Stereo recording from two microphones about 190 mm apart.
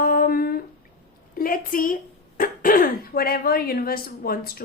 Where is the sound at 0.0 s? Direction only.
50° left (ahead or behind).